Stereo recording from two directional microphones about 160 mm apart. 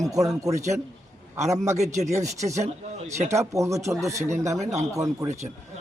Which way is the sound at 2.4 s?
20° right (ahead or behind).